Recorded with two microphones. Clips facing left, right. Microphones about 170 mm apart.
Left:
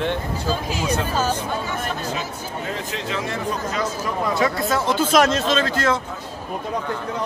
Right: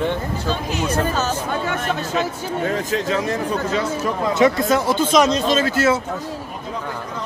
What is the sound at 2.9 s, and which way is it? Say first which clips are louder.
Speech: right 5 dB; 40° right (ahead or behind).